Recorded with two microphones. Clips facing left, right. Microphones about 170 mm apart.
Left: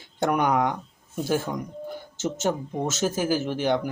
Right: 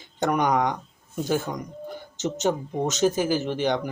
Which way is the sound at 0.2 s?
10° left (ahead or behind).